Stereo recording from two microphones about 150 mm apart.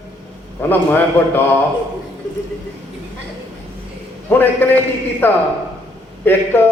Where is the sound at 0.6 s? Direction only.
15° left (ahead or behind).